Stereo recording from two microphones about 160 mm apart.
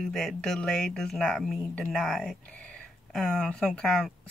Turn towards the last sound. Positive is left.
turn(degrees=5)  # may be behind; listen again after turning